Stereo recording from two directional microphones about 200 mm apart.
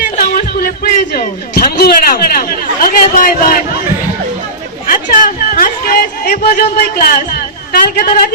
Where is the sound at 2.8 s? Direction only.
45° left (ahead or behind).